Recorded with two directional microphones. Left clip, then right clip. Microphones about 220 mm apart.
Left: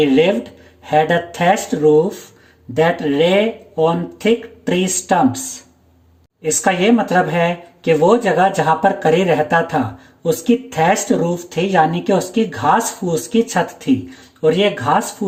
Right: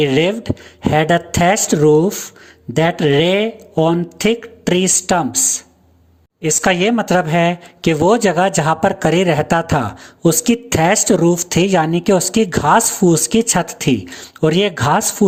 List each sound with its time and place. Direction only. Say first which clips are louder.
0.0 s speech: left 1 dB; 40° right (ahead or behind)